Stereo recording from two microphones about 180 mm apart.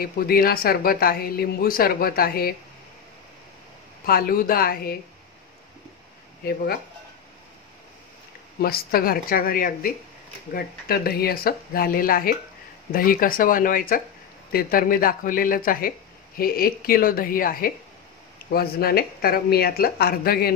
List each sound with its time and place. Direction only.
0.0 s speech: 55° left (ahead or behind)
4.0 s speech: 55° left (ahead or behind)
8.5 s speech: 55° left (ahead or behind)